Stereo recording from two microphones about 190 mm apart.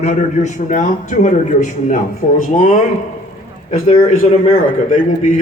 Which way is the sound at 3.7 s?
35° left (ahead or behind).